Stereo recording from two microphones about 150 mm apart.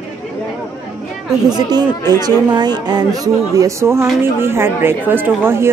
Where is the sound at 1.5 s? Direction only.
25° right (ahead or behind).